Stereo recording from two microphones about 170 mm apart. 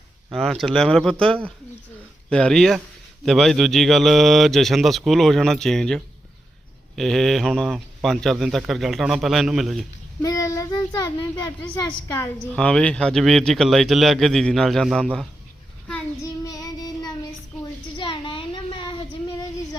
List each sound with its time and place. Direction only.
0.3 s a man's voice: centre (ahead or behind)
10.2 s speech: 20° left (ahead or behind)
12.5 s a man's voice: 5° left (ahead or behind)
16.2 s child singing: 20° left (ahead or behind)
17.9 s a sound: 30° left (ahead or behind)